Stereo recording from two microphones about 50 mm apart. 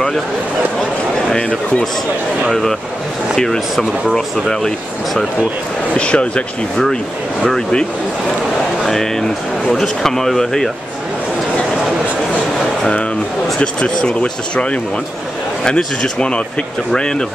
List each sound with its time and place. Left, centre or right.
1.3 s speech: centre
3.3 s speech: centre
5.9 s speech: left
7.4 s speech: centre
8.8 s speech: centre
13.6 s speech: left